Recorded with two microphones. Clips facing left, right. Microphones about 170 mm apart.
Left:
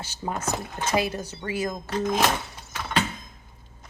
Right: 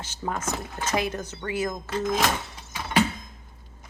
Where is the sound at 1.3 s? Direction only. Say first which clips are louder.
Even; 30° left (ahead or behind).